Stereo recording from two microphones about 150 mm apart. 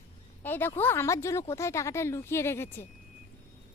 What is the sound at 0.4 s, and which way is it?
Speech, 15° left (ahead or behind).